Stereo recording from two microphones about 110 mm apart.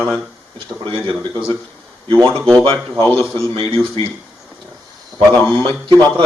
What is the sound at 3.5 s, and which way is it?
Speech, 55° right (ahead or behind).